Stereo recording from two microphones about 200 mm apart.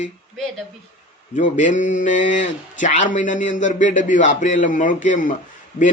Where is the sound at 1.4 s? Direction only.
40° left (ahead or behind).